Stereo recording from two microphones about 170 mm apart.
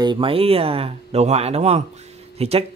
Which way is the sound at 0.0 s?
30° right (ahead or behind).